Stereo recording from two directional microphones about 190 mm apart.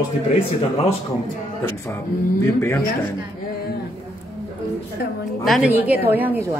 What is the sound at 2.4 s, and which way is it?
Speech, 15° left (ahead or behind).